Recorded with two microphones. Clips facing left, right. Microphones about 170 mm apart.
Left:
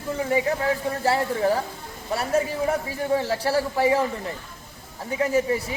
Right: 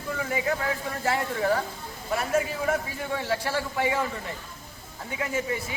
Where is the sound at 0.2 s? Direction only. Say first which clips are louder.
Left 5 dB; 30° left (ahead or behind).